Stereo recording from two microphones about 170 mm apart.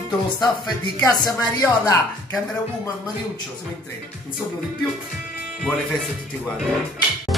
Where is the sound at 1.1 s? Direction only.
20° left (ahead or behind).